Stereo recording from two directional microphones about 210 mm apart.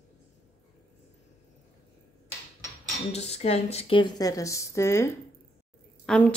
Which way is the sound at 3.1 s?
30° left (ahead or behind).